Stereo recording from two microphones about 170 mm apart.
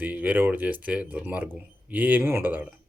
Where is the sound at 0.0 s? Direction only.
10° right (ahead or behind).